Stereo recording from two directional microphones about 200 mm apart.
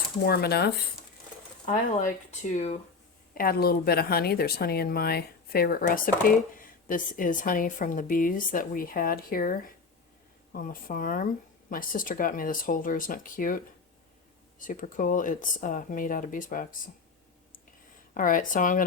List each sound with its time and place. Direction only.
0.3 s a woman's voice: 50° left (ahead or behind)
1.6 s speech: 40° left (ahead or behind)
3.3 s a woman's voice: 50° left (ahead or behind)
14.6 s speech: 40° left (ahead or behind)
18.1 s a woman's voice: 40° left (ahead or behind)